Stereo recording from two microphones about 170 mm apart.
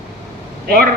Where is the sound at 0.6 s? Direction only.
60° right (ahead or behind).